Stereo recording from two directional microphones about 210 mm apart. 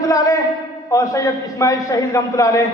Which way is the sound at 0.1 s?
15° left (ahead or behind).